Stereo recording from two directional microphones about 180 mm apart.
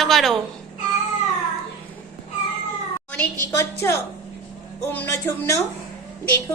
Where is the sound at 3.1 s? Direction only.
15° left (ahead or behind).